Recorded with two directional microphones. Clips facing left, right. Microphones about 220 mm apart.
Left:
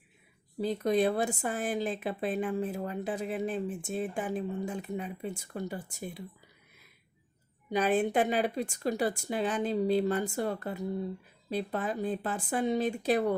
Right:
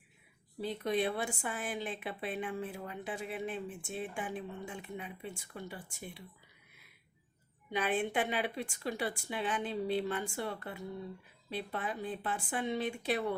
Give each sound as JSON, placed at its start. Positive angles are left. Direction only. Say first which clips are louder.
{"t": 0.6, "sound": "speech", "louder": "left 6 dB", "side_deg": 40}
{"t": 7.7, "sound": "speech", "louder": "left 6 dB", "side_deg": 40}